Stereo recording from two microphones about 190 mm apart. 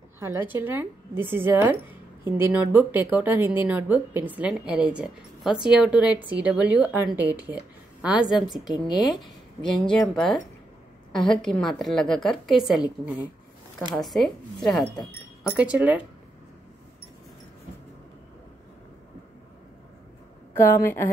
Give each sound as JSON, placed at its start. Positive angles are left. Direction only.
{"t": 0.2, "sound": "a woman's voice", "side_deg": -10}
{"t": 8.5, "sound": "a woman's voice", "side_deg": 20}
{"t": 9.1, "sound": "a woman's voice", "side_deg": 0}
{"t": 20.5, "sound": "a woman's voice", "side_deg": 10}